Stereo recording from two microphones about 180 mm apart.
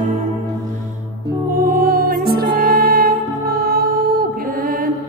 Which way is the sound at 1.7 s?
55° right (ahead or behind).